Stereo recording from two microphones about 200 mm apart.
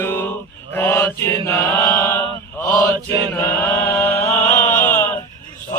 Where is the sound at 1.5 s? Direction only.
10° left (ahead or behind).